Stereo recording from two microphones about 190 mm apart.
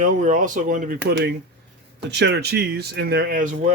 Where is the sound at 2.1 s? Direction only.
65° right (ahead or behind); by 3.7 s 45° right (ahead or behind).